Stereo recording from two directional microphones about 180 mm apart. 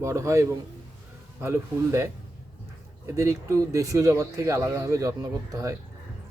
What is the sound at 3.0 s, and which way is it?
Speech, 15° right (ahead or behind).